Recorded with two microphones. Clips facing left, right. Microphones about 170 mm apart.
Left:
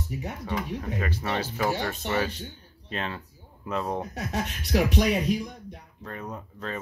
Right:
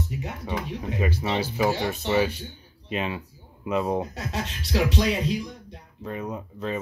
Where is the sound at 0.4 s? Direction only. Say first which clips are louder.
Even; 15° right (ahead or behind).